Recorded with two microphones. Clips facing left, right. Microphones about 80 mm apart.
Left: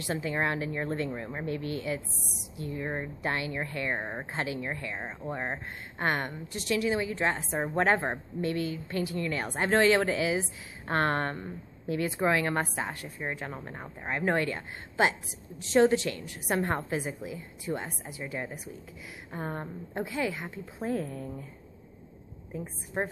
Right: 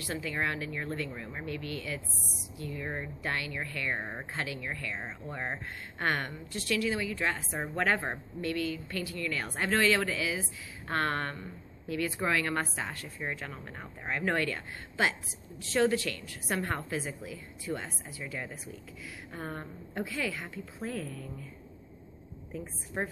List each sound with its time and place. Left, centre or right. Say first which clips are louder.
0.0 s a woman's voice: left 3 dB; left
4.0 s a woman's voice: left 3 dB; centre
4.3 s a woman's voice: left 5 dB; left
20.9 s speech: left 6 dB; left
23.0 s a woman's voice: left 3 dB; centre